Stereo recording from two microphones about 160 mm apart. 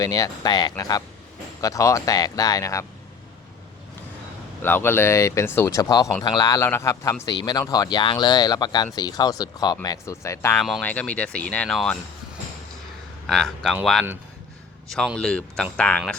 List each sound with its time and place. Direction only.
0.0 s a man's voice: 25° left (ahead or behind)
4.6 s a man's voice: 15° left (ahead or behind)
10.6 s speech: 5° left (ahead or behind)
13.2 s speech: 5° left (ahead or behind)
14.8 s speech: centre (ahead or behind)